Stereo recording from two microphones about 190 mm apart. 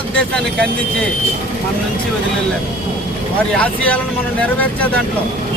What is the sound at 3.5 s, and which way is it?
Speech, 5° left (ahead or behind).